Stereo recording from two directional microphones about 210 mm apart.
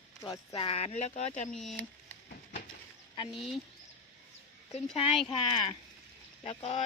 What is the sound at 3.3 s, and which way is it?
Speech, centre (ahead or behind).